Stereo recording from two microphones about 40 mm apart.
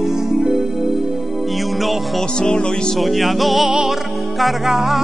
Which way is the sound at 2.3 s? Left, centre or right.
Centre.